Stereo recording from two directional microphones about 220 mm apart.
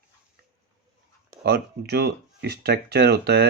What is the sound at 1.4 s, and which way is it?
Speech, 45° right (ahead or behind).